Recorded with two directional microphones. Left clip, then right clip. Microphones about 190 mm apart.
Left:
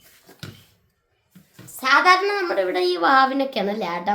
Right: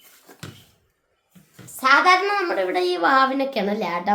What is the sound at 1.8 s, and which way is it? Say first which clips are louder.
A woman's voice: even; 5° left (ahead or behind).